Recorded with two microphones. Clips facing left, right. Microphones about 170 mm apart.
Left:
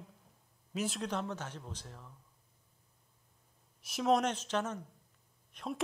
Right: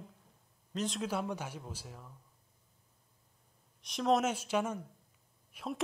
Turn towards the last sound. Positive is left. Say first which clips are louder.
# even
turn(degrees=-5)  # may be behind; listen again after turning